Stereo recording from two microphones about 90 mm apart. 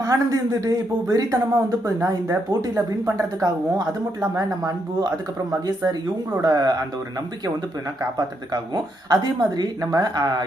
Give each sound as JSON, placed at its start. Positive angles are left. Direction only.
{"t": 0.0, "sound": "speech", "side_deg": -40}
{"t": 8.5, "sound": "speech", "side_deg": -50}